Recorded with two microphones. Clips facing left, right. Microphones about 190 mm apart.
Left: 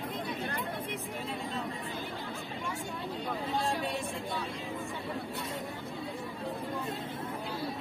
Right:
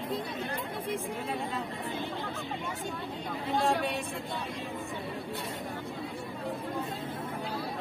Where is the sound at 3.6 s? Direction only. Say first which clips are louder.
Right 7 dB; 60° right (ahead or behind).